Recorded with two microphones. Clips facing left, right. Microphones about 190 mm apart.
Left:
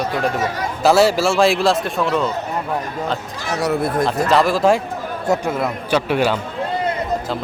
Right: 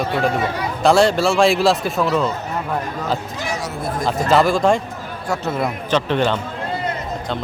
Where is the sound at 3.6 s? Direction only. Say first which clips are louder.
Left 7 dB; 65° left (ahead or behind).